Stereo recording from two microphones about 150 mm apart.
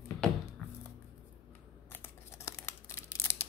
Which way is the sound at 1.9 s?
15° left (ahead or behind).